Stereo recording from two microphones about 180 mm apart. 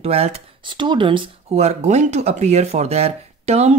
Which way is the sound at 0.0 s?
35° right (ahead or behind).